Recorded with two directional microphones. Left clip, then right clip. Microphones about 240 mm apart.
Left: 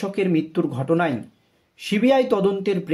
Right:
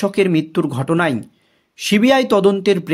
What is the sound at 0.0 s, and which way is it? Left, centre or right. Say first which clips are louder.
Speech: right 6 dB; right.